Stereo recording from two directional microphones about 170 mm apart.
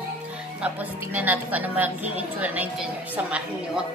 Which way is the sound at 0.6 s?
10° right (ahead or behind).